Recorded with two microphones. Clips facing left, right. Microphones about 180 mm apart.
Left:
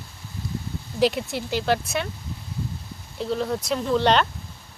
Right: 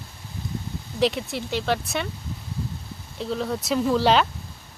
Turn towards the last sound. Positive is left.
turn(degrees=-5)  # may be behind; listen again after turning